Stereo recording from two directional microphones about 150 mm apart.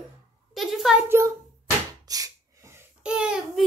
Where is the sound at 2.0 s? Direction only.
25° right (ahead or behind).